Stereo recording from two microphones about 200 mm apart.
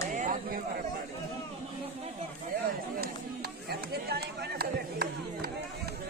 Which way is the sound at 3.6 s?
50° right (ahead or behind).